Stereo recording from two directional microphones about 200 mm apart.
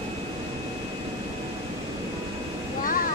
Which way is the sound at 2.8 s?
45° left (ahead or behind).